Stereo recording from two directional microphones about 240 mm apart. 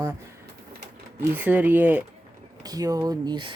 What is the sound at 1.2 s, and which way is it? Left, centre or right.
Speech, centre.